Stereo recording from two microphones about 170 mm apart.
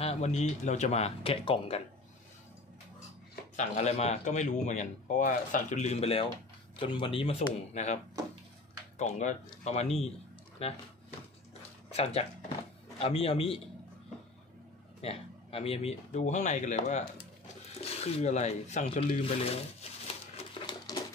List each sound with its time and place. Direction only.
0.0 s speech: 40° left (ahead or behind)
3.5 s speech: 40° left (ahead or behind)
11.9 s speech: 35° left (ahead or behind)
15.0 s speech: 35° left (ahead or behind)
19.2 s speech: 35° left (ahead or behind)
20.3 s a sound: 25° left (ahead or behind)